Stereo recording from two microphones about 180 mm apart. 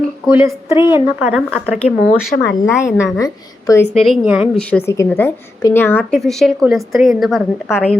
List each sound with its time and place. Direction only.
0.3 s speech: 15° right (ahead or behind)
2.3 s speech: 70° left (ahead or behind)
2.8 s a woman's voice: 15° left (ahead or behind)
3.9 s a woman's voice: centre (ahead or behind)
4.7 s a woman's voice: 10° left (ahead or behind)